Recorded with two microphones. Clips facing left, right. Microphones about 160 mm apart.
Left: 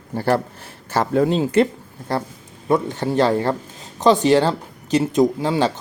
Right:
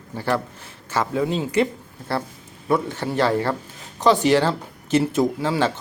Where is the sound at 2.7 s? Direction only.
20° left (ahead or behind).